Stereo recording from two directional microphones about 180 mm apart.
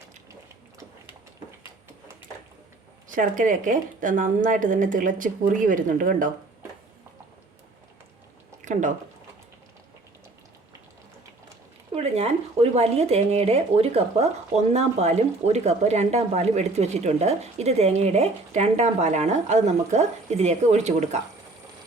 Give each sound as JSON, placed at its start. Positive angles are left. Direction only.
{"t": 3.1, "sound": "speech", "side_deg": -45}
{"t": 8.6, "sound": "speech", "side_deg": -45}
{"t": 11.9, "sound": "speech", "side_deg": -35}